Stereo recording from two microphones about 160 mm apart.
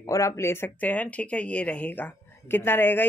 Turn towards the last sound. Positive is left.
turn(degrees=15)  # may be behind; listen again after turning